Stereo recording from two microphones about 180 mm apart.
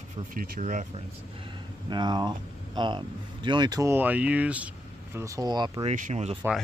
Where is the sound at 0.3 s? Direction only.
50° right (ahead or behind).